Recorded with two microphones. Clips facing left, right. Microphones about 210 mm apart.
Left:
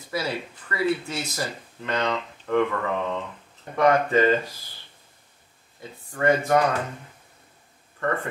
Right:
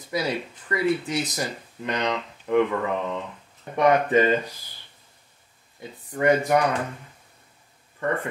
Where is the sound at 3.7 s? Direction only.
20° right (ahead or behind).